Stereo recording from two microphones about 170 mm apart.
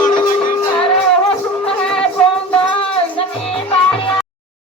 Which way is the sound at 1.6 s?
5° left (ahead or behind).